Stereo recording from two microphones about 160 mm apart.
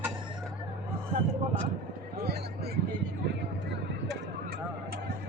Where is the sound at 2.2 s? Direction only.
85° right.